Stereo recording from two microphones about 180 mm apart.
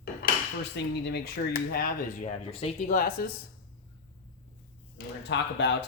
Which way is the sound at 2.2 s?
35° left (ahead or behind).